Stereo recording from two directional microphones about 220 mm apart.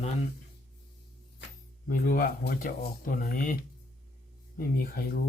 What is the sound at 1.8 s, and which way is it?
Speech, 40° left (ahead or behind).